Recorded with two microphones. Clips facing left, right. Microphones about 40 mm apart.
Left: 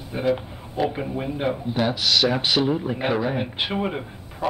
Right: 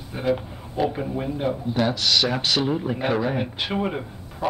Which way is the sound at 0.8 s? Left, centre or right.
Centre.